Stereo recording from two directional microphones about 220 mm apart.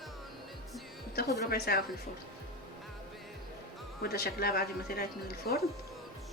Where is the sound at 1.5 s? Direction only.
45° left (ahead or behind).